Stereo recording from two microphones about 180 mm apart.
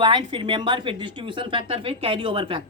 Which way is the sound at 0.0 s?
25° right (ahead or behind).